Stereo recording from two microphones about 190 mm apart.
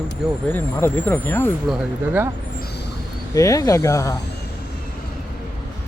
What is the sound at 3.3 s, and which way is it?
Speech, 20° left (ahead or behind).